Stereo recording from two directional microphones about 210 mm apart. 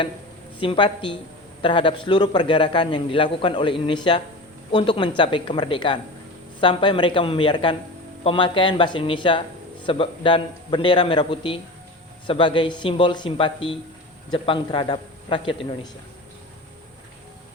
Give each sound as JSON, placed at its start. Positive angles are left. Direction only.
{"t": 0.6, "sound": "a man's voice", "side_deg": 25}